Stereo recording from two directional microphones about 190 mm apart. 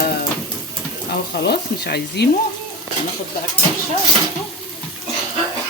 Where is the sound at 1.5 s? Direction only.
60° left (ahead or behind).